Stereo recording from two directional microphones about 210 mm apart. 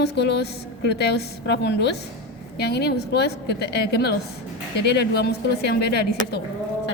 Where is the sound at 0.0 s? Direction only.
50° left (ahead or behind).